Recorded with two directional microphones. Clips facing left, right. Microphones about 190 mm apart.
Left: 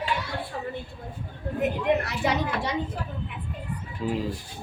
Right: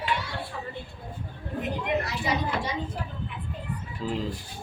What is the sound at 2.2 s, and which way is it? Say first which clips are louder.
Speech: left 4 dB; 65° left (ahead or behind).